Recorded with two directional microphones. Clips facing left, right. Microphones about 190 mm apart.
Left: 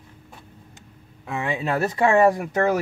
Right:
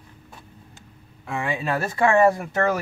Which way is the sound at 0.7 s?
20° left (ahead or behind).